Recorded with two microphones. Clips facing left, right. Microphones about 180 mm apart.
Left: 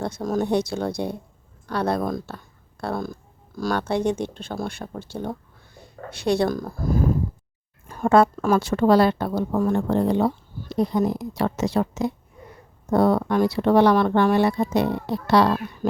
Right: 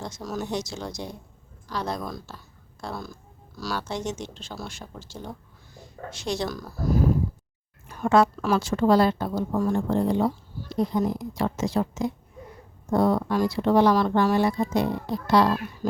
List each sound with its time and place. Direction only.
0.0 s a woman's voice: 55° left (ahead or behind)